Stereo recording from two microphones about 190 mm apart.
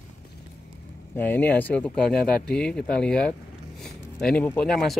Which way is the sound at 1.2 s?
10° left (ahead or behind).